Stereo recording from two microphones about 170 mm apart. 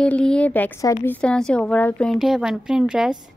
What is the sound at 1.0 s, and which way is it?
Speech, 5° left (ahead or behind).